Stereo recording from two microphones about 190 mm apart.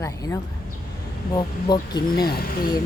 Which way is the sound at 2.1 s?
55° left (ahead or behind).